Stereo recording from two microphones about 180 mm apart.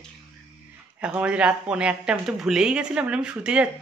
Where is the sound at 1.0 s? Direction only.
5° right (ahead or behind).